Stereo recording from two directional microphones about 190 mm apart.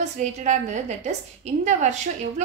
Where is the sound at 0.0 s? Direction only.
40° right (ahead or behind).